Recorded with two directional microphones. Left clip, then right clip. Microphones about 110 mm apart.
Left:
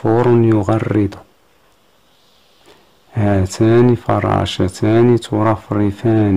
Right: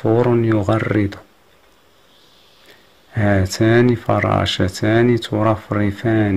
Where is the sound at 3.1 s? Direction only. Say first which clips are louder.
Left 1 dB; 25° left (ahead or behind).